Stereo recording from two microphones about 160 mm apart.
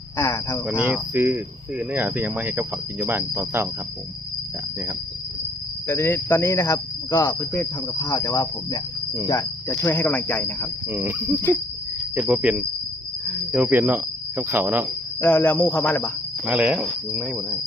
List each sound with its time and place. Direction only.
0.2 s cricket: 15° left (ahead or behind)
0.9 s speech: 10° right (ahead or behind)
5.9 s cricket: 10° left (ahead or behind)
10.9 s speech: 15° right (ahead or behind)
15.2 s cricket: 10° left (ahead or behind)
16.5 s speech: 10° right (ahead or behind)